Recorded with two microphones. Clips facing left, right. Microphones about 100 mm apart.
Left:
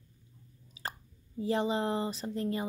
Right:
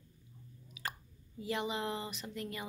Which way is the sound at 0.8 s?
35° left (ahead or behind).